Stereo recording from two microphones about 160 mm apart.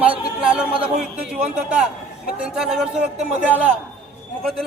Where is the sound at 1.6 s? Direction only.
5° right (ahead or behind).